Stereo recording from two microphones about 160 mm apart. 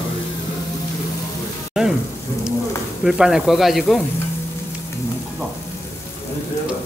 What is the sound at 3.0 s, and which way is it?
Speech, 5° right (ahead or behind).